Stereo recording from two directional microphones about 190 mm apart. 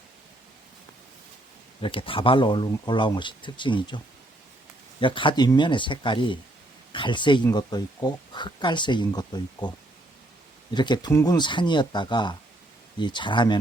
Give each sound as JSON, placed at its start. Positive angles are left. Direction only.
{"t": 1.8, "sound": "speech", "side_deg": 30}
{"t": 10.8, "sound": "speech", "side_deg": 25}